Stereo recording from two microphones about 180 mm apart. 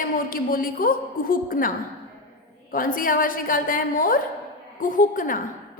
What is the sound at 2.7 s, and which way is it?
A woman's voice, 50° left (ahead or behind).